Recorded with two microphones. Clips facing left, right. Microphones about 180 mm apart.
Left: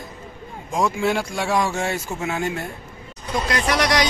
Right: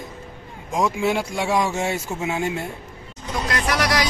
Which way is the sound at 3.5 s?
Centre (ahead or behind).